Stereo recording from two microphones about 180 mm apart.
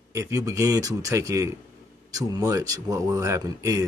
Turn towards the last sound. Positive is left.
turn(degrees=-20)  # may be behind; listen again after turning